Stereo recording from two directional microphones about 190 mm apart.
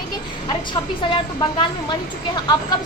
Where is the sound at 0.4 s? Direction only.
25° left (ahead or behind).